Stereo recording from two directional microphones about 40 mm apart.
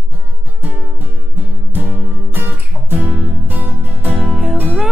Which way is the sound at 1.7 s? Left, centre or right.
Right.